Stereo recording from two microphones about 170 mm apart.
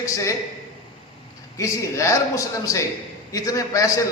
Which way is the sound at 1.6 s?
20° left (ahead or behind).